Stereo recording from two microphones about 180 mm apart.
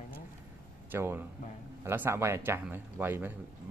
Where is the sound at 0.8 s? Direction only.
10° right (ahead or behind).